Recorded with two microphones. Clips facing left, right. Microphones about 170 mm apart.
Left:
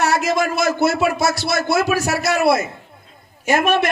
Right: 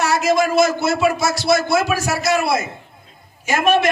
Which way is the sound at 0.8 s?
60° left (ahead or behind).